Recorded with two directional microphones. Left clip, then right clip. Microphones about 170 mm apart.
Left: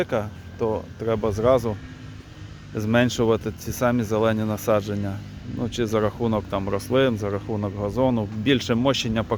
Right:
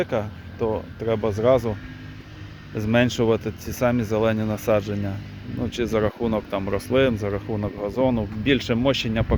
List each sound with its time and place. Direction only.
0.0 s speech: centre (ahead or behind)
2.7 s speech: 5° left (ahead or behind)